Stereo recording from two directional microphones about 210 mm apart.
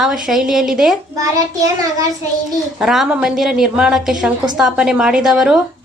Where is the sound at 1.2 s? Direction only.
15° right (ahead or behind).